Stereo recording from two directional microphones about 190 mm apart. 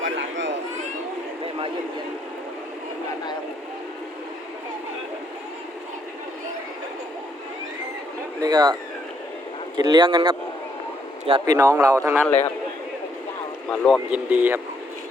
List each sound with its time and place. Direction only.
0.0 s a sound: 75° right (ahead or behind)
8.4 s speech: 20° right (ahead or behind)
9.7 s speech: 20° right (ahead or behind)
13.7 s speech: centre (ahead or behind)